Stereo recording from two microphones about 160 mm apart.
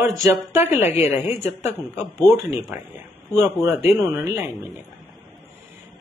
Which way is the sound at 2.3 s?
20° right (ahead or behind).